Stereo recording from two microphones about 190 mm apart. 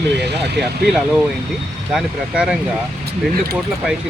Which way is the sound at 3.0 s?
55° right (ahead or behind).